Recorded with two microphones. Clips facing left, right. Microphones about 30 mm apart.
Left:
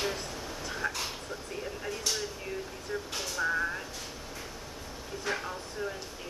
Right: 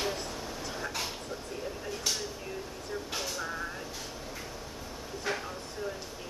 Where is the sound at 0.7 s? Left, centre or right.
Centre.